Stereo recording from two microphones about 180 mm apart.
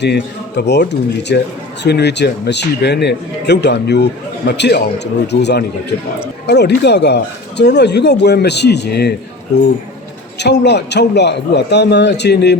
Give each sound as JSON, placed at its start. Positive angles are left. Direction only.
{"t": 0.0, "sound": "speech", "side_deg": 70}
{"t": 10.3, "sound": "speech", "side_deg": 70}